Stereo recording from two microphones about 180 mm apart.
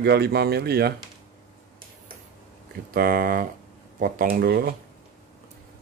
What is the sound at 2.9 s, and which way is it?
Speech, 55° right (ahead or behind).